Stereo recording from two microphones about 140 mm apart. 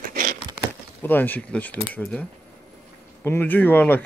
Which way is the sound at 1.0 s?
15° left (ahead or behind).